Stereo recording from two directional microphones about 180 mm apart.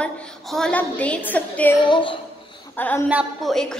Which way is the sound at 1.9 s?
25° left (ahead or behind).